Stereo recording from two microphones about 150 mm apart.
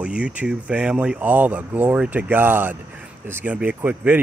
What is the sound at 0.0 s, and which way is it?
Speech, 5° right (ahead or behind).